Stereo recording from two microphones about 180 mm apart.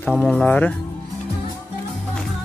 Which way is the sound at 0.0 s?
5° left (ahead or behind).